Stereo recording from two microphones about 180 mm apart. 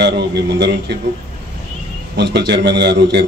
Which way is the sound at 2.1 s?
70° right (ahead or behind).